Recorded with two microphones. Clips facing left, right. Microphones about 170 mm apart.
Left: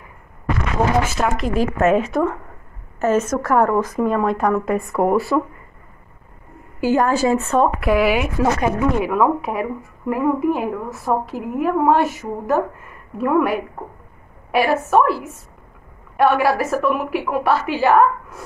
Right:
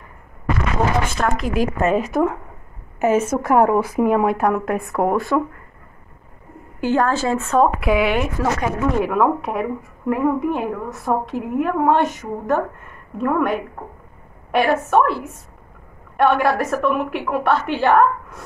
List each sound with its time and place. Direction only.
1.1 s a woman's voice: centre (ahead or behind)
3.0 s speech: 10° right (ahead or behind); by 5.4 s 5° left (ahead or behind)
6.8 s a woman's voice: 10° left (ahead or behind)
8.4 s speech: 15° left (ahead or behind)
8.9 s a woman's voice: centre (ahead or behind)
16.2 s a woman's voice: 5° left (ahead or behind)